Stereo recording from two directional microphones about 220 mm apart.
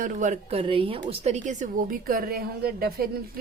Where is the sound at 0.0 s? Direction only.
35° right (ahead or behind).